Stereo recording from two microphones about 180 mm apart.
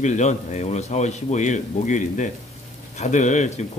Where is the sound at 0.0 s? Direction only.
40° left (ahead or behind).